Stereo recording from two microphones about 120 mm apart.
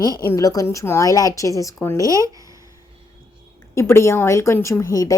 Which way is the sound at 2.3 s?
30° right (ahead or behind).